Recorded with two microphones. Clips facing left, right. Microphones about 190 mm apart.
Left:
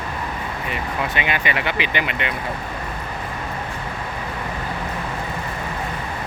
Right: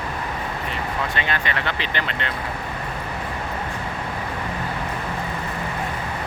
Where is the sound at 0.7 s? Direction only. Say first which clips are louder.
Left 3 dB; 10° left (ahead or behind).